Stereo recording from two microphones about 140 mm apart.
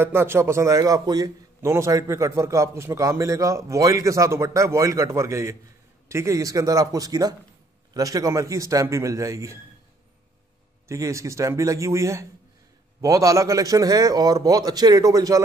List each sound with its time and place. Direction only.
0.0 s a man's voice: 15° right (ahead or behind)
10.9 s a man's voice: 20° right (ahead or behind)